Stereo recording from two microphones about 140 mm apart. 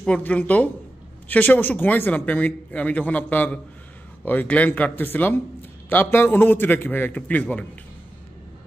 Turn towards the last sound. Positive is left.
turn(degrees=10)  # may be behind; listen again after turning